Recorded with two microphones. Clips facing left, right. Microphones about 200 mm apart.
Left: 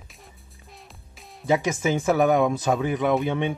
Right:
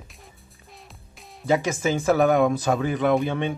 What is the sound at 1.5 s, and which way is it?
Speech, 15° left (ahead or behind).